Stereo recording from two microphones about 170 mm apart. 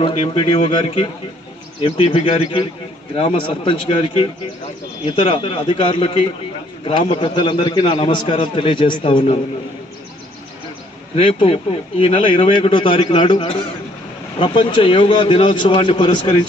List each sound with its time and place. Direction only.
0.0 s a man's voice: 35° left (ahead or behind)
11.1 s speech: 30° left (ahead or behind)